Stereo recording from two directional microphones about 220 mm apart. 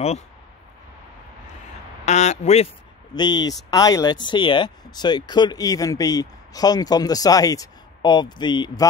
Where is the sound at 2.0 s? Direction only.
30° left (ahead or behind).